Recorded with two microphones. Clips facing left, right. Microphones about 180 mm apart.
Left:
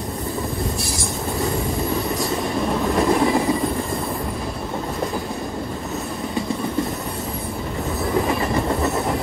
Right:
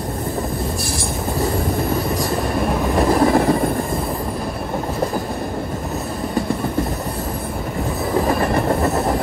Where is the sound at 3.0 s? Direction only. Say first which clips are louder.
Right 3 dB; 40° right (ahead or behind).